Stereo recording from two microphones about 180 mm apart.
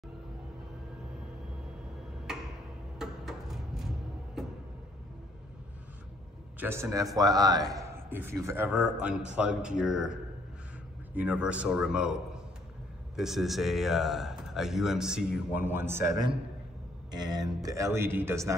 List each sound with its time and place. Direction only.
2.3 s tick-tock: 5° right (ahead or behind)
3.0 s music: centre (ahead or behind)
4.4 s a sound: centre (ahead or behind)
6.6 s a man's voice: 15° right (ahead or behind)
11.1 s a man's voice: 5° right (ahead or behind)
16.1 s speech: 25° right (ahead or behind)